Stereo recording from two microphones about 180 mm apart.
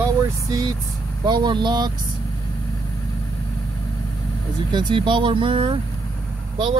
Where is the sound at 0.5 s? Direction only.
25° right (ahead or behind).